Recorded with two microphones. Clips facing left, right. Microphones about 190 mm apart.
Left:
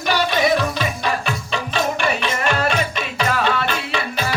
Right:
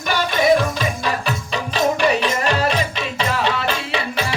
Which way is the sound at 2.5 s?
30° right (ahead or behind).